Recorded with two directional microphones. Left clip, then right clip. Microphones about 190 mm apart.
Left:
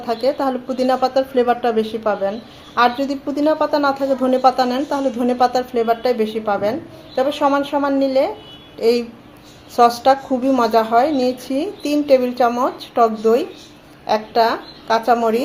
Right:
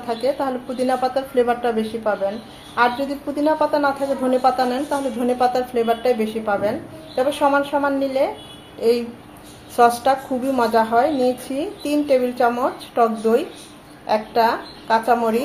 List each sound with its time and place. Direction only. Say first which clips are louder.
0.1 s a woman's voice: left 3 dB; 30° left (ahead or behind)
9.7 s a woman's voice: left 2 dB; 30° left (ahead or behind)